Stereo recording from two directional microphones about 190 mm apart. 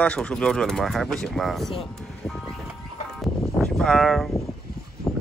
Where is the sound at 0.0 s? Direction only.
5° left (ahead or behind).